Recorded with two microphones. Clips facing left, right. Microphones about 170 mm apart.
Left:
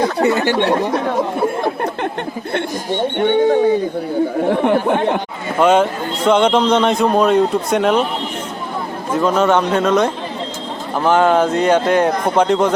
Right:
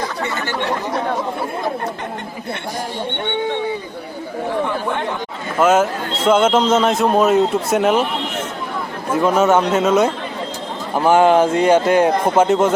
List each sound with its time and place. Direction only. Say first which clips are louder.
3.2 s speech: left 9 dB; 40° left (ahead or behind)
4.4 s speech: left 4 dB; 60° left (ahead or behind)
5.5 s a man's voice: left 1 dB; 5° right (ahead or behind)
9.1 s a man's voice: even; 10° right (ahead or behind)